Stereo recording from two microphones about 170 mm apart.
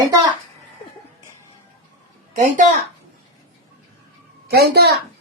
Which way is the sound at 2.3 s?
50° right (ahead or behind).